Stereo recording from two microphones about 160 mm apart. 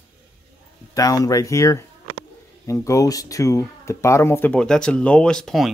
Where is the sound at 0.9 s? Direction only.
20° left (ahead or behind).